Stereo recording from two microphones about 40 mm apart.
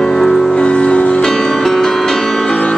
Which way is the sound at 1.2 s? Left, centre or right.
Centre.